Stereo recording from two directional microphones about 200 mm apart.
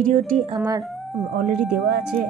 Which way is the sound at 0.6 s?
15° right (ahead or behind).